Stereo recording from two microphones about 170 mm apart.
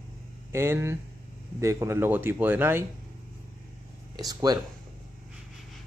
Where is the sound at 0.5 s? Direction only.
15° right (ahead or behind).